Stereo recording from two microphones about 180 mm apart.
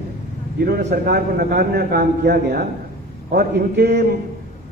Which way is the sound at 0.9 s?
60° right (ahead or behind).